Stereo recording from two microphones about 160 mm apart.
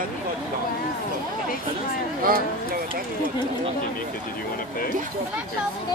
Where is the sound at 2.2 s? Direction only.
65° right (ahead or behind).